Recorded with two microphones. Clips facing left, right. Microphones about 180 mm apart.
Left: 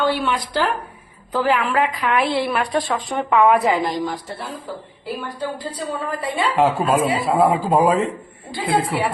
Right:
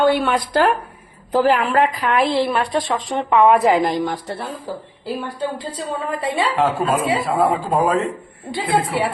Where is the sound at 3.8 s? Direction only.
60° right (ahead or behind).